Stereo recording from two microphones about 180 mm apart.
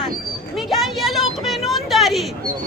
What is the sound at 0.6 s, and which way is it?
A woman's voice, centre (ahead or behind).